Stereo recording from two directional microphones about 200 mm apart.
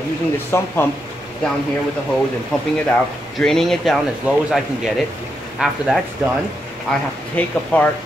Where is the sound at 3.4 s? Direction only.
Centre (ahead or behind).